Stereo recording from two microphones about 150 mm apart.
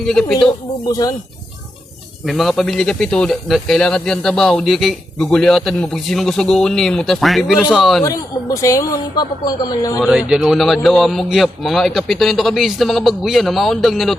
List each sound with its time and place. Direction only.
0.0 s speech: 5° left (ahead or behind)
0.9 s speech: 25° left (ahead or behind)
2.2 s speech: centre (ahead or behind)
8.0 s speech: 20° left (ahead or behind)
10.0 s speech: 5° right (ahead or behind)